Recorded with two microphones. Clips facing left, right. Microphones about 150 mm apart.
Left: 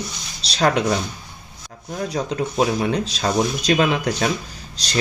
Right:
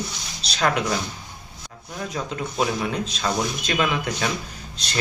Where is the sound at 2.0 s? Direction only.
35° left (ahead or behind).